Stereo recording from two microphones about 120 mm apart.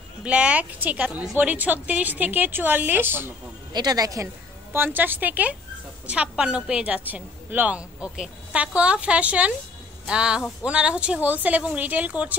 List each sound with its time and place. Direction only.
0.2 s a woman's voice: 10° right (ahead or behind)
3.7 s a woman's voice: 35° right (ahead or behind)
4.7 s a woman's voice: 15° right (ahead or behind)